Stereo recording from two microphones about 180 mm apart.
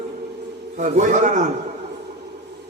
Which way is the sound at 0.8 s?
40° right (ahead or behind).